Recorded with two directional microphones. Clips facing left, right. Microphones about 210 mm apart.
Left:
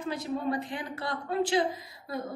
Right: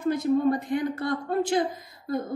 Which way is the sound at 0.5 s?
45° right (ahead or behind).